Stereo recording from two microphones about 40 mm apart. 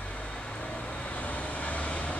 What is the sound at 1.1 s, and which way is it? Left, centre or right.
Vehicle, left.